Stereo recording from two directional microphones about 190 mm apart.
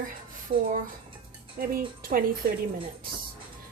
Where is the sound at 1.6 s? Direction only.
50° right (ahead or behind).